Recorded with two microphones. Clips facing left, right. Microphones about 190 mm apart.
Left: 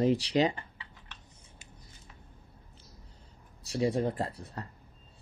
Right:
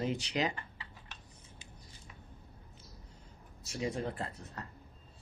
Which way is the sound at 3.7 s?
35° left (ahead or behind).